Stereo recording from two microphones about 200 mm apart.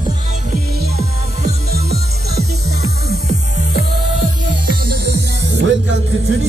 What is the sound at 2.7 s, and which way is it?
Music, 90° left.